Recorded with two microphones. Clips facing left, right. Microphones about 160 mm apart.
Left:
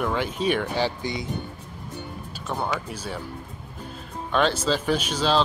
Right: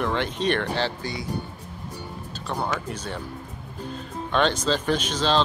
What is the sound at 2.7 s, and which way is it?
Speech, 10° left (ahead or behind).